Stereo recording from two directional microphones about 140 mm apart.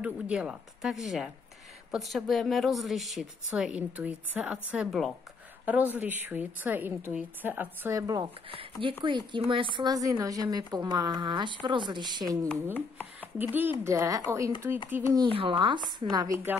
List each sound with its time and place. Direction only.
0.0 s a woman's voice: 5° right (ahead or behind); by 8.3 s 25° right (ahead or behind)
8.8 s a woman's voice: 35° right (ahead or behind)
12.7 s chopping: 10° left (ahead or behind)
13.4 s a woman's voice: 15° right (ahead or behind)
15.1 s a woman's voice: 40° right (ahead or behind)